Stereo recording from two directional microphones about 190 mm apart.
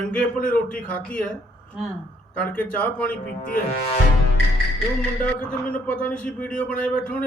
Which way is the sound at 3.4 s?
45° left (ahead or behind).